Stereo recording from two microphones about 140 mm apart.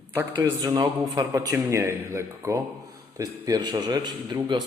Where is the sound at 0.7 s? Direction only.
25° right (ahead or behind).